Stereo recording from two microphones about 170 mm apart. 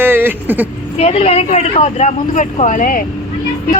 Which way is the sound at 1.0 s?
35° left (ahead or behind).